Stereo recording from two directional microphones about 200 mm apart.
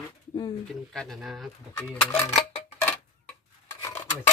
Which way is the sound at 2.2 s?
30° left (ahead or behind).